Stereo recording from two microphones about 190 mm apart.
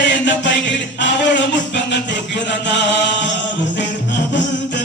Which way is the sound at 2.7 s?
70° left (ahead or behind).